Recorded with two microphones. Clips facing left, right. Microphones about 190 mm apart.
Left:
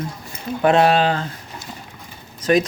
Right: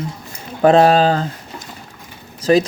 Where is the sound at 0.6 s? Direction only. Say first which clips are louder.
Right 4 dB; 35° right (ahead or behind).